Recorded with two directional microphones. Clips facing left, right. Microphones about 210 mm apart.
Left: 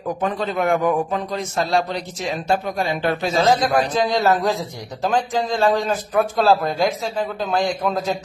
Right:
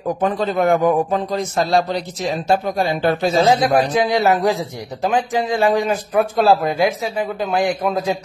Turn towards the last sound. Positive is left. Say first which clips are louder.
# right 2 dB
turn(degrees=-15)  # may be behind; listen again after turning